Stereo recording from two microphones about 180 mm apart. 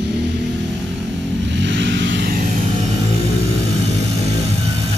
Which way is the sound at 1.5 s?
85° right.